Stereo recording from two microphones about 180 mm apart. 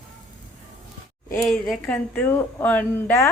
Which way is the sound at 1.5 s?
Centre (ahead or behind).